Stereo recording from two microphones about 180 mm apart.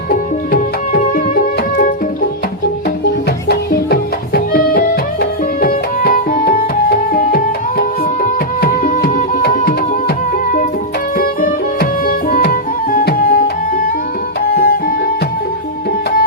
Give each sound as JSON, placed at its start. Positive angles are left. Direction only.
{"t": 0.1, "sound": "music", "side_deg": 55}
{"t": 3.5, "sound": "music", "side_deg": 60}
{"t": 11.2, "sound": "music", "side_deg": 50}
{"t": 14.5, "sound": "music", "side_deg": 55}